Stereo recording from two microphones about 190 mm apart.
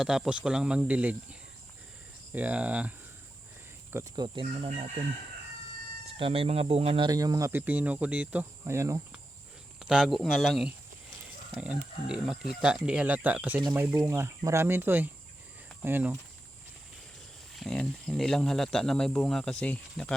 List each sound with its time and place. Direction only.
0.0 s speech: 5° right (ahead or behind)
3.9 s speech: 20° right (ahead or behind)
6.1 s speech: 30° right (ahead or behind)
9.8 s speech: 5° right (ahead or behind)
17.5 s speech: centre (ahead or behind)